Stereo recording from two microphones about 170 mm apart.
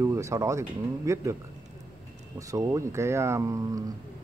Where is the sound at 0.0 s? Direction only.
15° right (ahead or behind).